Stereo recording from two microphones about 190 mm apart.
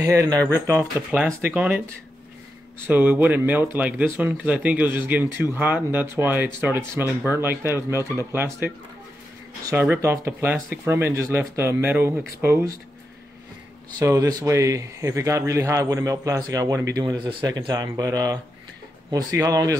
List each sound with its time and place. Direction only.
0.0 s speech: 15° right (ahead or behind)
2.8 s speech: 10° right (ahead or behind)
13.9 s a man's voice: 20° right (ahead or behind)